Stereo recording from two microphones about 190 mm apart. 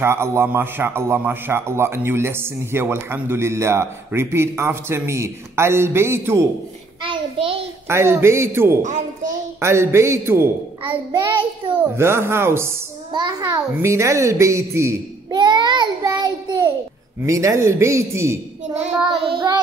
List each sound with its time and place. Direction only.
0.0 s a man's voice: 15° right (ahead or behind)
7.0 s a child's voice: 25° right (ahead or behind)
7.9 s a man's voice: 15° right (ahead or behind)
10.8 s child singing: 25° right (ahead or behind)
11.8 s a man's voice: 15° right (ahead or behind)
19.0 s child singing: 25° right (ahead or behind)